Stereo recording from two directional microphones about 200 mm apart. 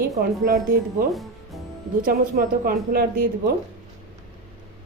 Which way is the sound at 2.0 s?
45° right (ahead or behind).